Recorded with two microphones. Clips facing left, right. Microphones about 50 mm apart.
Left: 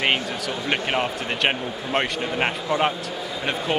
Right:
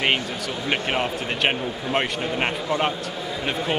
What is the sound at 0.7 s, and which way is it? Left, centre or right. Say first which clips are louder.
Speech: even; centre.